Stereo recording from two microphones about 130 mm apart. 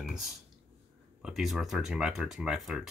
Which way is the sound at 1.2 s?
Centre (ahead or behind).